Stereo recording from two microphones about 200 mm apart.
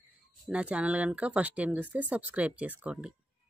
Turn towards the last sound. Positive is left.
turn(degrees=-5)  # may be behind; listen again after turning